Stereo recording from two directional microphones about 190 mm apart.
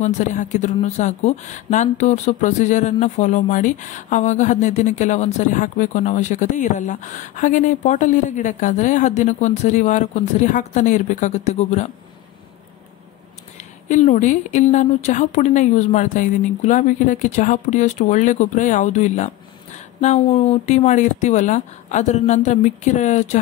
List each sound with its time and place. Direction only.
0.0 s speech: 40° left (ahead or behind)
13.8 s speech: 40° left (ahead or behind)